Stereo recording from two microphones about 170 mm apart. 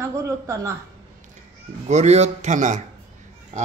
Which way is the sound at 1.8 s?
40° right (ahead or behind).